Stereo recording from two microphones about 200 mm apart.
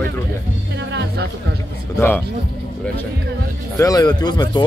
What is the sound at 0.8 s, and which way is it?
Speech, 60° right (ahead or behind).